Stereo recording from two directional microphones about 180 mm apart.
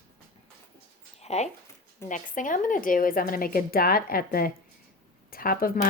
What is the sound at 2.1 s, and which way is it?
Speech, 45° left (ahead or behind).